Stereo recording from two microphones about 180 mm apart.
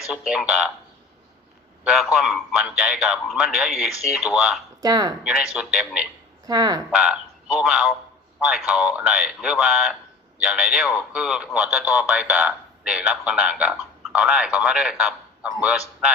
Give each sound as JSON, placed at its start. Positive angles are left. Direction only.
{"t": 0.1, "sound": "speech", "side_deg": -5}
{"t": 1.8, "sound": "a man's voice", "side_deg": -5}
{"t": 4.8, "sound": "speech", "side_deg": -20}
{"t": 5.2, "sound": "speech", "side_deg": -5}
{"t": 6.5, "sound": "speech", "side_deg": -20}
{"t": 6.9, "sound": "a man's voice", "side_deg": -5}